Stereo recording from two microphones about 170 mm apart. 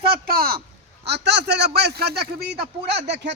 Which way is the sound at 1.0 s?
80° right.